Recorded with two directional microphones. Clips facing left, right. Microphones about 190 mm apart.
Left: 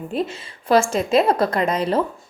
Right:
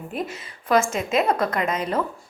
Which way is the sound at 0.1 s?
30° left (ahead or behind).